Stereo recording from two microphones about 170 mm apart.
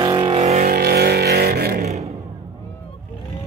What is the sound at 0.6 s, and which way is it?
Vehicle, 60° right (ahead or behind).